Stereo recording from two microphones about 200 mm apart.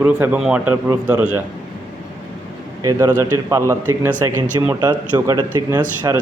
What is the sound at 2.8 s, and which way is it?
Speech, 15° right (ahead or behind).